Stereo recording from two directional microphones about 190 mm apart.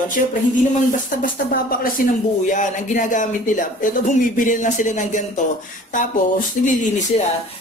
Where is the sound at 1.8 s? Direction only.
45° left (ahead or behind).